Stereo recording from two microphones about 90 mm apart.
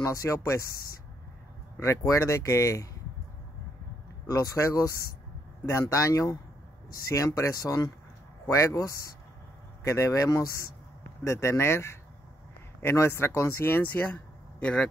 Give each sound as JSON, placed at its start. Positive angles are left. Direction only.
{"t": 0.0, "sound": "speech", "side_deg": 35}
{"t": 1.8, "sound": "speech", "side_deg": 35}
{"t": 4.3, "sound": "speech", "side_deg": 40}